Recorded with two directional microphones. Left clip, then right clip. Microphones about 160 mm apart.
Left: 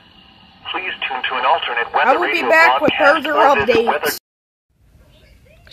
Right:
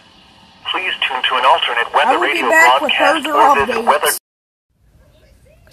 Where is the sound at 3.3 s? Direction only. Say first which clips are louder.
Right 1 dB; 20° right (ahead or behind).